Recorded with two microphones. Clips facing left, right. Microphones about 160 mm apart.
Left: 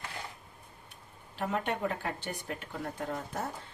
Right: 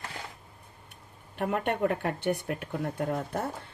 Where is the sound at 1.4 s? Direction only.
60° right (ahead or behind).